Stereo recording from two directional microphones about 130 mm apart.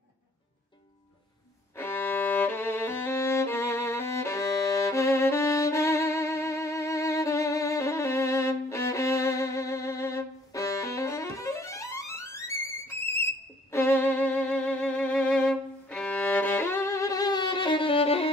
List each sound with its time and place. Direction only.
1.8 s violin: 15° left (ahead or behind)
13.7 s music: 20° left (ahead or behind); by 18.3 s 45° left (ahead or behind)